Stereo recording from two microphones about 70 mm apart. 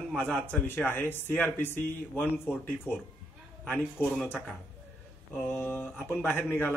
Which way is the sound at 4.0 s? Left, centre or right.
Left.